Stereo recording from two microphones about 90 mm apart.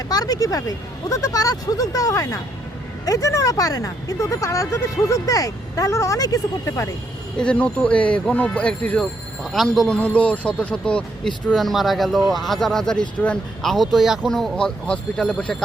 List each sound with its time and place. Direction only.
0.1 s speech: 45° left (ahead or behind)
7.3 s speech: 10° left (ahead or behind)
9.4 s speech: centre (ahead or behind)
11.5 s speech: centre (ahead or behind)